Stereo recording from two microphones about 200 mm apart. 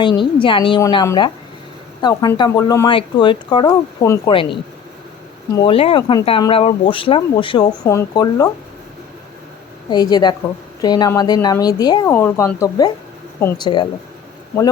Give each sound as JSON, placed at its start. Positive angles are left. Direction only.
{"t": 0.0, "sound": "speech", "side_deg": 25}
{"t": 9.9, "sound": "speech", "side_deg": 20}